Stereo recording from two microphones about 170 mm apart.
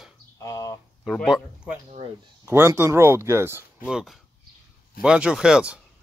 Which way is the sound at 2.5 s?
15° right (ahead or behind).